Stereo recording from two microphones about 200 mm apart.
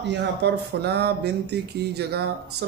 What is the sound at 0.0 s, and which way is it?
A man's voice, 60° right (ahead or behind).